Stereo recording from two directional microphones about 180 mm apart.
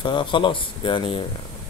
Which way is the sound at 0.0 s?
25° left (ahead or behind).